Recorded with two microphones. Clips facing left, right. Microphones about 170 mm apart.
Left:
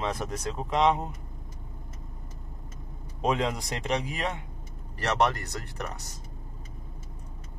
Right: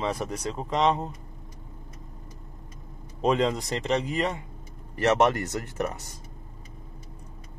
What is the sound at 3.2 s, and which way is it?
Speech, centre (ahead or behind).